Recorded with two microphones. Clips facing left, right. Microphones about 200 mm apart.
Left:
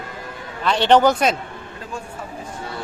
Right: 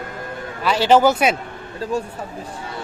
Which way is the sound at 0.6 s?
5° right (ahead or behind).